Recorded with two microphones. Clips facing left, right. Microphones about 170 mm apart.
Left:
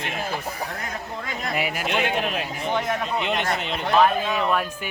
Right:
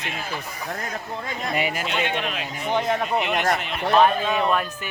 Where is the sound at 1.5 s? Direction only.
5° left (ahead or behind).